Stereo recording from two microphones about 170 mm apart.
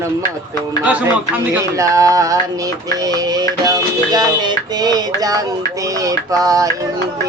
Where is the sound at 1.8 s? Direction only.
20° right (ahead or behind).